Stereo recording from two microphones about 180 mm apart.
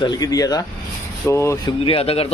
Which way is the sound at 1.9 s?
30° left (ahead or behind).